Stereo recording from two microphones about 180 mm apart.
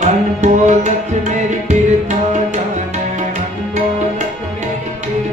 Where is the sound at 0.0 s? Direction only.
40° right (ahead or behind).